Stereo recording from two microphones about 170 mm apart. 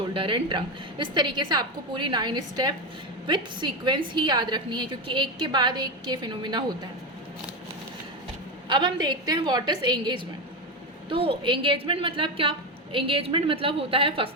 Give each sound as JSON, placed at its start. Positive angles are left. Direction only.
{"t": 0.1, "sound": "a woman's voice", "side_deg": -30}
{"t": 8.7, "sound": "a woman's voice", "side_deg": -25}